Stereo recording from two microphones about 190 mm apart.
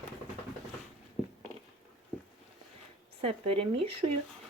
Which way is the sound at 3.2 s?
30° right (ahead or behind).